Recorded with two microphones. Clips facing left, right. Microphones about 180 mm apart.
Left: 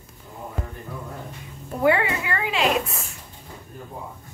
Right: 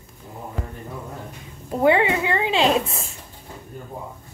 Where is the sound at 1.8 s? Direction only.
20° right (ahead or behind).